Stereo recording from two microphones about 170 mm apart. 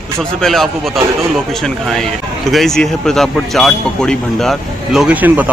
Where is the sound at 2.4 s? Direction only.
Centre (ahead or behind).